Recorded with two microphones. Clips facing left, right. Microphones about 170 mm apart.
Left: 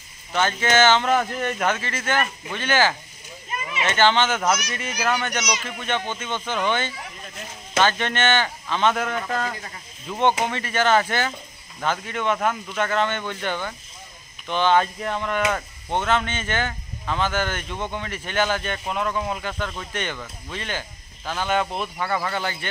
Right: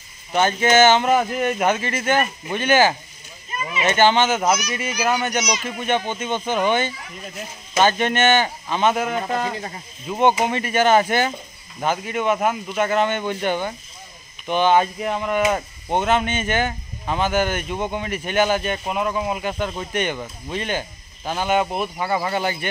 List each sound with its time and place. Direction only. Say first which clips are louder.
0.3 s speech: right 4 dB; 15° right (ahead or behind)
19.5 s speech: right 5 dB; 20° right (ahead or behind)